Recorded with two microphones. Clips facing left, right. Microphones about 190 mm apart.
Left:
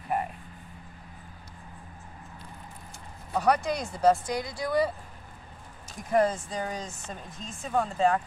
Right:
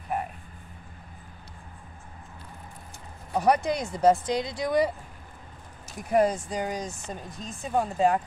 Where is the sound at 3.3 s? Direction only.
20° right (ahead or behind).